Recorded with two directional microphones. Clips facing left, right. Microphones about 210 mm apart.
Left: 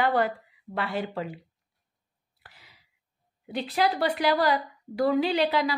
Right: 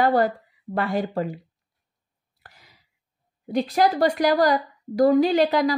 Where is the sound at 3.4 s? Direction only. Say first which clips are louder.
Right 6 dB; 45° right (ahead or behind).